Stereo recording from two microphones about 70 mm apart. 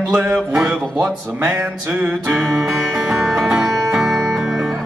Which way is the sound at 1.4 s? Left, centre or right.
Right.